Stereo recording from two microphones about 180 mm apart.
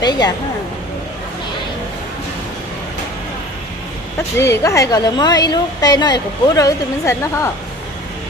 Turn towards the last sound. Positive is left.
turn(degrees=15)  # may be behind; listen again after turning